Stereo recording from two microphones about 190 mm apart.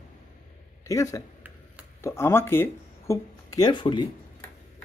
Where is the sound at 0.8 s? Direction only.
15° left (ahead or behind).